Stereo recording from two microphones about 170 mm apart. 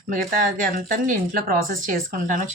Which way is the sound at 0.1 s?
50° right (ahead or behind).